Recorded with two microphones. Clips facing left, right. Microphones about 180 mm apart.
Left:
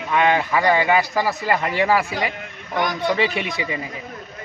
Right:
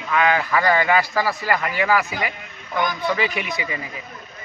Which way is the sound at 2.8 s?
80° left.